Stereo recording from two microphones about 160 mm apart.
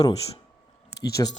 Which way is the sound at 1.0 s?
20° left (ahead or behind).